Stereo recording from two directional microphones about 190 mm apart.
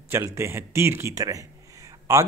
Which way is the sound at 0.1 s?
15° right (ahead or behind).